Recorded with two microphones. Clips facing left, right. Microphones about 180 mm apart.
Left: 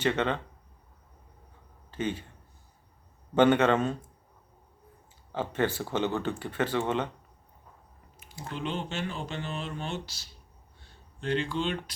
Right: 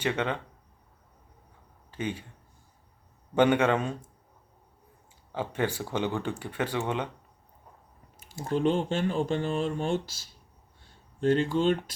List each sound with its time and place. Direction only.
0.0 s speech: 10° right (ahead or behind)
1.9 s speech: 10° right (ahead or behind)
3.3 s speech: 10° right (ahead or behind)
5.3 s speech: 10° right (ahead or behind)
8.4 s speech: 45° right (ahead or behind)